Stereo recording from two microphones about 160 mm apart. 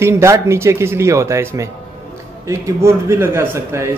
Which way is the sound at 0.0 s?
15° right (ahead or behind).